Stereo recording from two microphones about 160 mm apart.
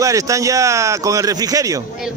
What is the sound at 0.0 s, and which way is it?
A man's voice, 20° right (ahead or behind).